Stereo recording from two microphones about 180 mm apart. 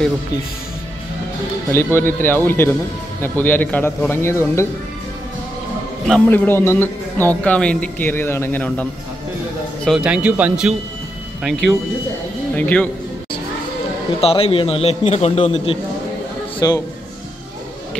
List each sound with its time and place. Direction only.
1.7 s a man's voice: 15° left (ahead or behind)
6.0 s a man's voice: 5° left (ahead or behind)
9.8 s speech: 5° right (ahead or behind)
12.5 s a man's voice: 10° left (ahead or behind)
14.2 s a man's voice: 30° left (ahead or behind)
16.5 s speech: 20° left (ahead or behind)